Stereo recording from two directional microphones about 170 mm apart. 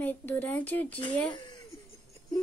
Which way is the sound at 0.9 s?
30° left (ahead or behind).